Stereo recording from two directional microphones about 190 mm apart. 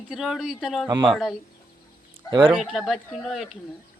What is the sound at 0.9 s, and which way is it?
Speech, 15° right (ahead or behind).